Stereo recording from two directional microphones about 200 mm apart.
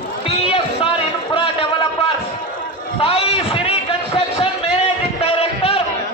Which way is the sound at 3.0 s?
30° left (ahead or behind).